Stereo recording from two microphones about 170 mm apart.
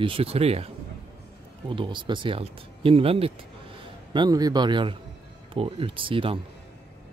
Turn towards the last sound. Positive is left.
turn(degrees=-30)  # may be behind; listen again after turning